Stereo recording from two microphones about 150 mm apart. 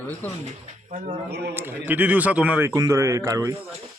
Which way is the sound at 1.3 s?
90° right.